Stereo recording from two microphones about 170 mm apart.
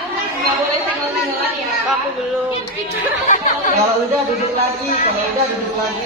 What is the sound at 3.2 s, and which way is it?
Speech, 50° left (ahead or behind).